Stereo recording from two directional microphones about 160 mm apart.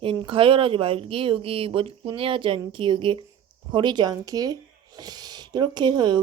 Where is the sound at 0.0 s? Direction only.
35° right (ahead or behind).